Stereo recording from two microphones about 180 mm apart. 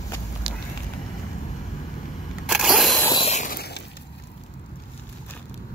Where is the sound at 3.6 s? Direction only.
65° left (ahead or behind).